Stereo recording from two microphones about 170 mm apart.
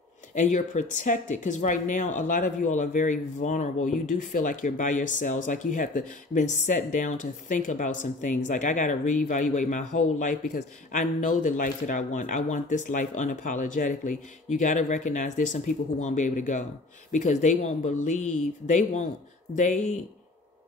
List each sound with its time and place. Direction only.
0.3 s speech: 45° left (ahead or behind)